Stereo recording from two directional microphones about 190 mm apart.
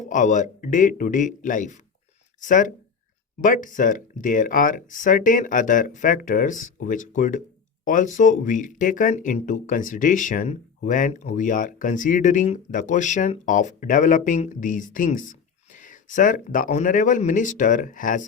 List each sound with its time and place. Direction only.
0.0 s speech: 40° left (ahead or behind)